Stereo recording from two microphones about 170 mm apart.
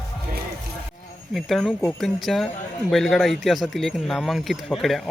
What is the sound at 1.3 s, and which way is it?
Speech, centre (ahead or behind).